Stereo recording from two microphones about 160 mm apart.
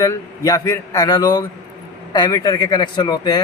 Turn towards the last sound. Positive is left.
turn(degrees=25)  # may be behind; listen again after turning